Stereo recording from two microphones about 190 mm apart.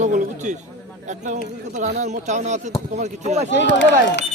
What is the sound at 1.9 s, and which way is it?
Speech, 40° right (ahead or behind).